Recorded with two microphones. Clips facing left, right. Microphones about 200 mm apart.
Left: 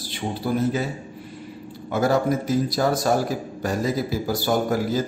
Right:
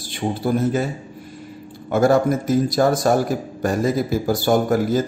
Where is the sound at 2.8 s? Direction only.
50° right (ahead or behind).